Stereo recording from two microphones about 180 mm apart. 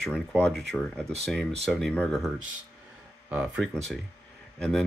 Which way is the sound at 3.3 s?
10° right (ahead or behind).